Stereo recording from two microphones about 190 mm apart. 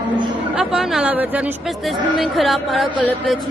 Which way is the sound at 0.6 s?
5° right (ahead or behind).